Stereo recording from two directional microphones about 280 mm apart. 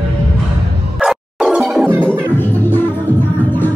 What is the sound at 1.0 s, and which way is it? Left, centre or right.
Music, centre.